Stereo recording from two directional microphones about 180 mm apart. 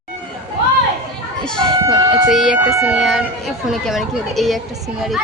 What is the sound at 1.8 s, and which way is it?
Emergency vehicle, 20° right (ahead or behind).